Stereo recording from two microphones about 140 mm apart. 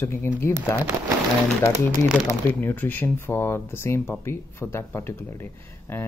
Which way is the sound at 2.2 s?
15° left (ahead or behind).